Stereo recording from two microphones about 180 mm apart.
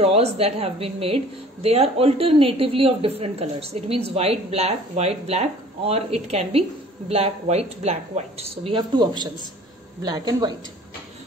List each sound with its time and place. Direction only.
0.0 s a woman's voice: 35° right (ahead or behind)